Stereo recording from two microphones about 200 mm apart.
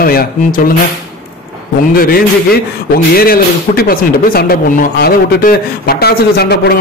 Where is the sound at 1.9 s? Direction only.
50° left (ahead or behind).